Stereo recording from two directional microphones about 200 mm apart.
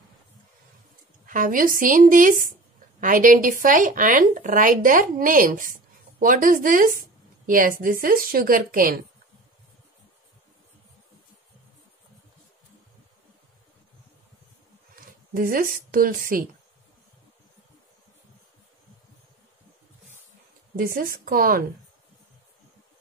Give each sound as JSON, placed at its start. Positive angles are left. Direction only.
{"t": 1.2, "sound": "speech", "side_deg": -40}
{"t": 15.3, "sound": "speech", "side_deg": -45}
{"t": 20.8, "sound": "speech", "side_deg": -45}